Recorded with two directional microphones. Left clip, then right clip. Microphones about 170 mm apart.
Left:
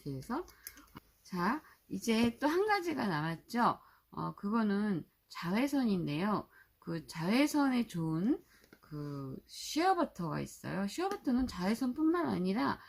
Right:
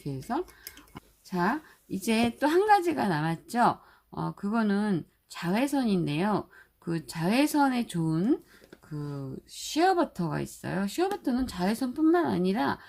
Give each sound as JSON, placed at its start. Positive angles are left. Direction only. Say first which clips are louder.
{"t": 0.0, "sound": "a woman's voice", "louder": "right 8 dB", "side_deg": -40}